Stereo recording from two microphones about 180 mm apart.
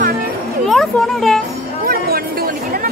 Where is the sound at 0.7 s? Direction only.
Centre (ahead or behind).